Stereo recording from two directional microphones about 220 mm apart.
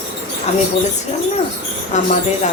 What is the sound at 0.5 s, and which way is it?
Speech, 30° left (ahead or behind).